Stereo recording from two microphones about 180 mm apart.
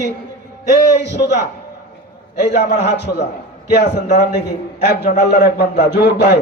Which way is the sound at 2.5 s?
70° left (ahead or behind).